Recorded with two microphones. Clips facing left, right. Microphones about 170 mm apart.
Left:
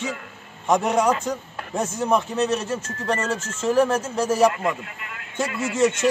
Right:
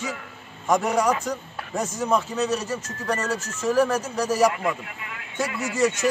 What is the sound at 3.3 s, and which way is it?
Speech, 25° left (ahead or behind).